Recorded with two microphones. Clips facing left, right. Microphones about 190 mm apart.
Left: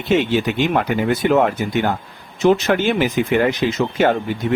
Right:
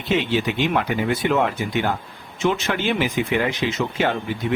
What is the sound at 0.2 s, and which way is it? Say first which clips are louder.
Speech: left 3 dB; 45° left (ahead or behind).